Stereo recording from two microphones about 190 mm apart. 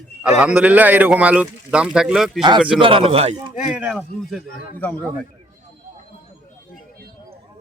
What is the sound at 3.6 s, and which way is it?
A man's voice, 5° right (ahead or behind).